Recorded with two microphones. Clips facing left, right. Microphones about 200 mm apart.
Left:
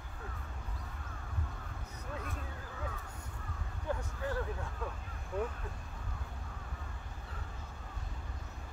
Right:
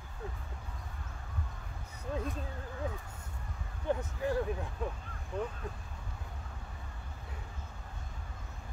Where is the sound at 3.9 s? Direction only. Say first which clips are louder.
Right 5 dB; 15° right (ahead or behind).